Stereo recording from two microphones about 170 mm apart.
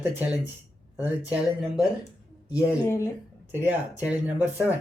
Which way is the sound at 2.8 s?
15° left (ahead or behind).